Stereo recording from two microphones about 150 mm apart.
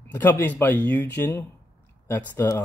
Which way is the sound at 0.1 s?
15° left (ahead or behind).